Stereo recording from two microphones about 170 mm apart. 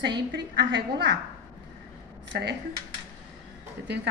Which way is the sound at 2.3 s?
75° right (ahead or behind).